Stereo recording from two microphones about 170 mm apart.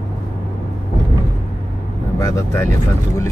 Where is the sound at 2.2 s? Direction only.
20° left (ahead or behind).